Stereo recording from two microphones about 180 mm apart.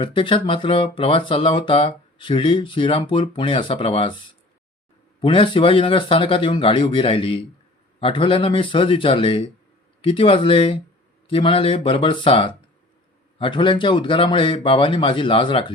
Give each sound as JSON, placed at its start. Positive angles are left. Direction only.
{"t": 0.0, "sound": "speech", "side_deg": 30}
{"t": 5.2, "sound": "speech", "side_deg": 30}